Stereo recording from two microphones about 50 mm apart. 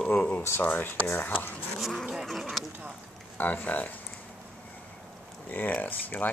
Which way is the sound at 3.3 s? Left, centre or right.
Left.